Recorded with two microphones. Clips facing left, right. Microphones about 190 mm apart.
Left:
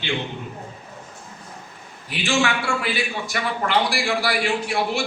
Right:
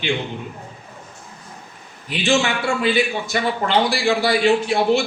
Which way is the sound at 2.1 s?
20° right (ahead or behind).